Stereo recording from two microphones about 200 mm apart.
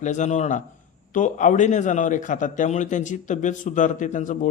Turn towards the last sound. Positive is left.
turn(degrees=40)  # may be behind; listen again after turning